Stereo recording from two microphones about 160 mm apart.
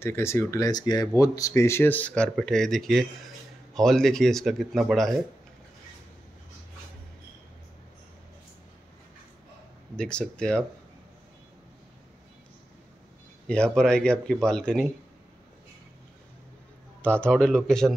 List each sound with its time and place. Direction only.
0.0 s speech: 15° left (ahead or behind)
9.9 s speech: 5° left (ahead or behind)
13.5 s speech: 5° left (ahead or behind)
17.2 s speech: 5° left (ahead or behind)